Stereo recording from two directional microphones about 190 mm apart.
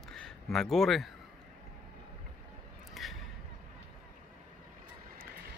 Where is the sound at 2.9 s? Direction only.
Centre (ahead or behind).